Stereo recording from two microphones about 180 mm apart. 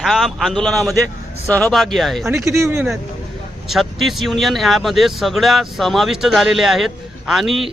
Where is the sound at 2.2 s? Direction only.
15° right (ahead or behind).